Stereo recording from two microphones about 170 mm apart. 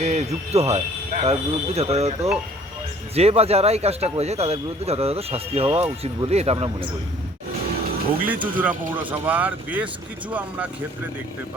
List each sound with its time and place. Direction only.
0.0 s a man's voice: 40° right (ahead or behind)
8.4 s speech: 10° right (ahead or behind)